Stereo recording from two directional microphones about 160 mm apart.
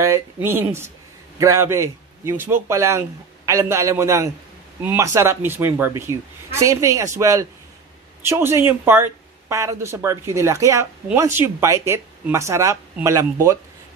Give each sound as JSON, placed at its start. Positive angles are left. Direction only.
{"t": 0.0, "sound": "a man's voice", "side_deg": -15}